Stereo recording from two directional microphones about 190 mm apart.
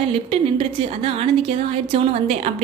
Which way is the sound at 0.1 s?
30° right (ahead or behind).